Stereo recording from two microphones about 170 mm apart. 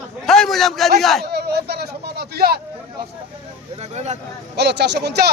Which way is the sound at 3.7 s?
40° right (ahead or behind).